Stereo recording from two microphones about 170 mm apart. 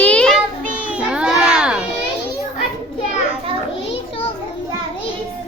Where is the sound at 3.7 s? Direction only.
90° left.